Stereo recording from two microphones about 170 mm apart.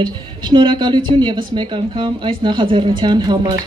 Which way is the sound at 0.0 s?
25° right (ahead or behind).